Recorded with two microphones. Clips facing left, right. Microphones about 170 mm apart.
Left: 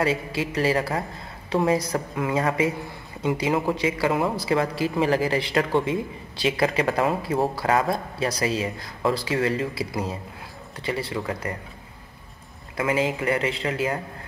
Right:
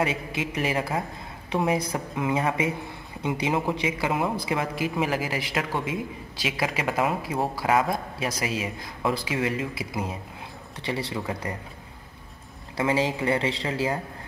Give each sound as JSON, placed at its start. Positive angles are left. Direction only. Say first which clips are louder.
{"t": 0.0, "sound": "a man's voice", "louder": "left 3 dB", "side_deg": -20}
{"t": 10.9, "sound": "speech", "louder": "left 2 dB", "side_deg": -25}
{"t": 12.7, "sound": "speech", "louder": "left 1 dB", "side_deg": -25}